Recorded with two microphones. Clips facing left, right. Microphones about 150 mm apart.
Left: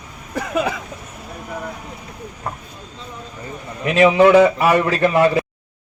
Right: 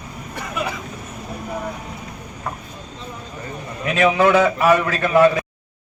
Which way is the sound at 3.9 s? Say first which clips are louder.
Left 4 dB; 25° left (ahead or behind).